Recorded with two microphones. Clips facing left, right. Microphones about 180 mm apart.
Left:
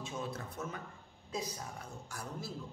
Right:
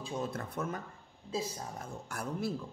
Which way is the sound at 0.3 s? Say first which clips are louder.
Right 5 dB; 50° right (ahead or behind).